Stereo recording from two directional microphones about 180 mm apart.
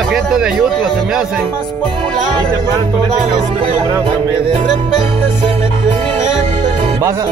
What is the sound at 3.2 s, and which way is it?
Music, 30° right (ahead or behind).